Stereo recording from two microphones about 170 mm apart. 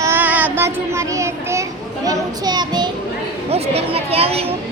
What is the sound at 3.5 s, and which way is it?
Speech, 35° right (ahead or behind).